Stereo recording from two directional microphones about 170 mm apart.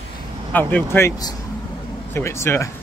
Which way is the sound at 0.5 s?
10° left (ahead or behind).